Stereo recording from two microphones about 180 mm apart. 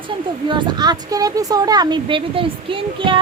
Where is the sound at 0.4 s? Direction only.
25° right (ahead or behind).